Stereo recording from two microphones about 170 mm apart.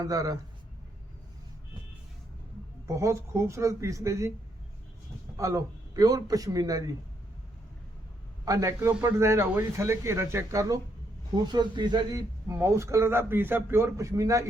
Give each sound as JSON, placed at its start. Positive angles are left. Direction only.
{"t": 0.0, "sound": "a man's voice", "side_deg": -20}
{"t": 2.8, "sound": "a man's voice", "side_deg": -15}
{"t": 5.4, "sound": "a man's voice", "side_deg": -20}
{"t": 8.4, "sound": "a man's voice", "side_deg": -20}